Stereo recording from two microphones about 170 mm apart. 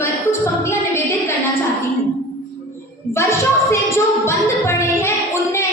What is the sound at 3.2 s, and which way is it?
Music, 15° left (ahead or behind).